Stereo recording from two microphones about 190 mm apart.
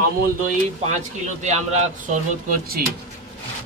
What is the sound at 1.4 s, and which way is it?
Speech, 35° right (ahead or behind).